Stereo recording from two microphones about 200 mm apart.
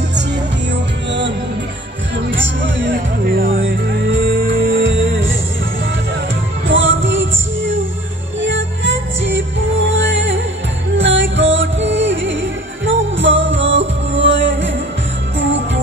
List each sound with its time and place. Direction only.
2.3 s music: 70° right (ahead or behind)
2.9 s music: 50° right (ahead or behind)
6.7 s music: 70° right (ahead or behind)